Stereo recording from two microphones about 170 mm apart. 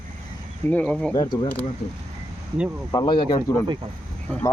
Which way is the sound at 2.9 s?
25° left (ahead or behind).